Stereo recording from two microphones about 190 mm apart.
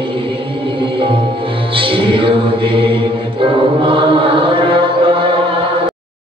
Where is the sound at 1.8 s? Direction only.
30° right (ahead or behind).